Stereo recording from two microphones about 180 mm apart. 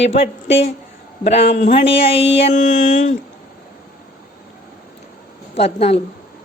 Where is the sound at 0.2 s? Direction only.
75° left (ahead or behind).